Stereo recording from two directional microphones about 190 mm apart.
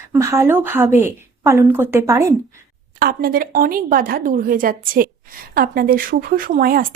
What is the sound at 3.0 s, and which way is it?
Speech, 50° right (ahead or behind).